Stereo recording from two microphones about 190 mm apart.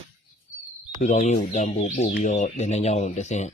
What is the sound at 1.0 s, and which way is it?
Speech, 40° left (ahead or behind).